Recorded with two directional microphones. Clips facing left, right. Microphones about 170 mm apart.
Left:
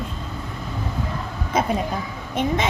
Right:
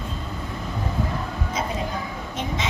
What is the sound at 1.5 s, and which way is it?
Speech, 55° left (ahead or behind).